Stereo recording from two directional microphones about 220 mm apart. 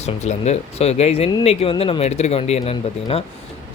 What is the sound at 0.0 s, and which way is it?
Speech, 30° left (ahead or behind).